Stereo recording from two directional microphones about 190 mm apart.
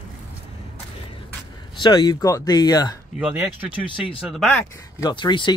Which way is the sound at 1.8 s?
20° left (ahead or behind).